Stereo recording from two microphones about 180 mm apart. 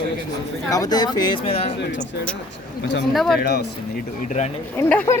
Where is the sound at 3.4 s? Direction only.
60° left (ahead or behind).